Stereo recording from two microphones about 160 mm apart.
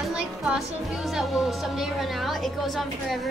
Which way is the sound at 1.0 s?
Centre (ahead or behind).